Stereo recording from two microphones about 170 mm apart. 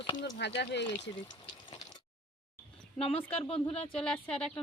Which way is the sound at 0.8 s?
25° left (ahead or behind).